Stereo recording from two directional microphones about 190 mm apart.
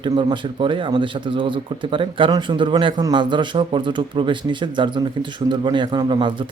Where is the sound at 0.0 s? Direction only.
25° right (ahead or behind).